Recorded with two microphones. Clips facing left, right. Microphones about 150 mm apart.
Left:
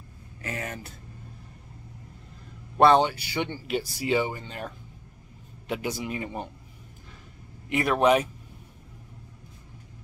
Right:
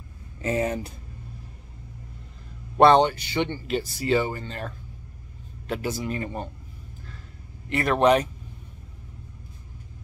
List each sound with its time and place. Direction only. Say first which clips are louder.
0.4 s speech: right 10 dB; 25° right (ahead or behind)
2.8 s speech: right 2 dB; 5° left (ahead or behind)
7.7 s speech: right 2 dB; 10° left (ahead or behind)